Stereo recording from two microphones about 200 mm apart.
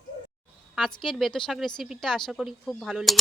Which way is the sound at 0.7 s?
Centre (ahead or behind).